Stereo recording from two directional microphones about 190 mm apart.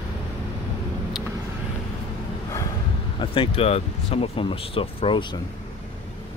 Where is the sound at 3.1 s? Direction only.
25° left (ahead or behind).